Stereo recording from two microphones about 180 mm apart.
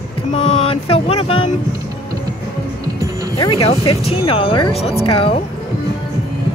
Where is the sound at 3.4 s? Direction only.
30° left (ahead or behind).